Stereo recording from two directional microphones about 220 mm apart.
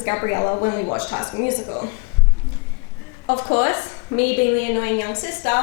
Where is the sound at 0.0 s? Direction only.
20° left (ahead or behind).